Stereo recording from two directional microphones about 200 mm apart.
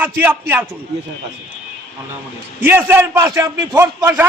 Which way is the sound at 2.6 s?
10° right (ahead or behind).